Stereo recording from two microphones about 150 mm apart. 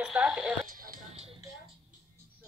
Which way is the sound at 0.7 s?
70° right (ahead or behind).